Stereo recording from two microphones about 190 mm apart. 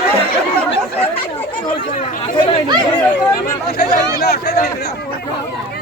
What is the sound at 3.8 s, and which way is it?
Speech, 55° left (ahead or behind).